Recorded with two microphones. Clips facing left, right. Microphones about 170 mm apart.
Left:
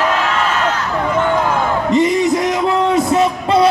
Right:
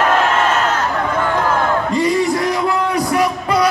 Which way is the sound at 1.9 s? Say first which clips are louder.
Left 6 dB; 20° left (ahead or behind).